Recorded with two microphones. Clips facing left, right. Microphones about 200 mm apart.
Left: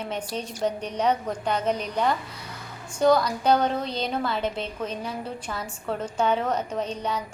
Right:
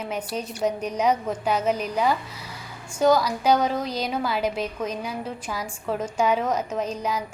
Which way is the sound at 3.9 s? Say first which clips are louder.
Right 1 dB; 30° left (ahead or behind).